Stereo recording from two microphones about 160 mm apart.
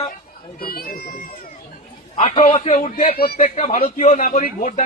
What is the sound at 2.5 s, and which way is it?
Speech, 40° left (ahead or behind).